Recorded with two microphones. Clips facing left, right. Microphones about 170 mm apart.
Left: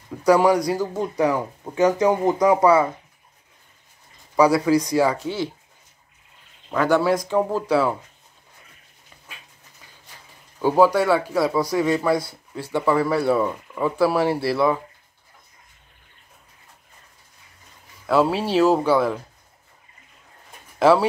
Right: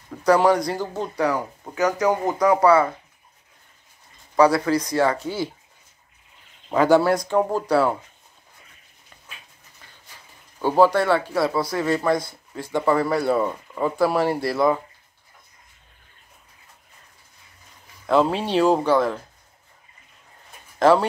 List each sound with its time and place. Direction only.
0.2 s speech: 10° left (ahead or behind)
4.4 s speech: 10° left (ahead or behind)
6.7 s speech: 10° right (ahead or behind)
10.6 s speech: 10° left (ahead or behind)
18.0 s speech: 5° left (ahead or behind)
20.8 s speech: 5° left (ahead or behind)